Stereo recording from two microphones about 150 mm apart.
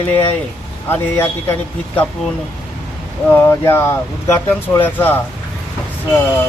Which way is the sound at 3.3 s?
15° left (ahead or behind).